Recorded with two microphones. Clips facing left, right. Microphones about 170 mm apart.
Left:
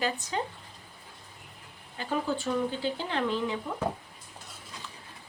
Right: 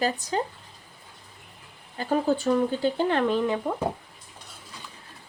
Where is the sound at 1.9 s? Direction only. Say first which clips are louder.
Right 7 dB; 40° right (ahead or behind).